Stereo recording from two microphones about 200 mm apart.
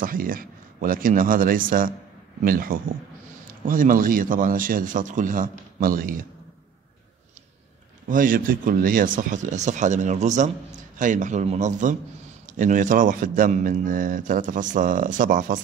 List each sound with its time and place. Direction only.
0.0 s a man's voice: 45° right (ahead or behind)
8.1 s speech: 45° right (ahead or behind)